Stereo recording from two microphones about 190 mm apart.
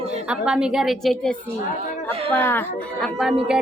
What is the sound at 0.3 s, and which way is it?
A woman's voice, 5° right (ahead or behind).